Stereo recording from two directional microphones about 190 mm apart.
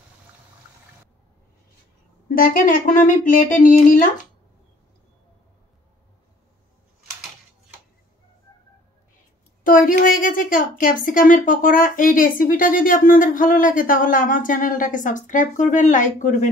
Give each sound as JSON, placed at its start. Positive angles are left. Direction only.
{"t": 2.2, "sound": "a woman's voice", "side_deg": 50}
{"t": 9.6, "sound": "a woman's voice", "side_deg": 45}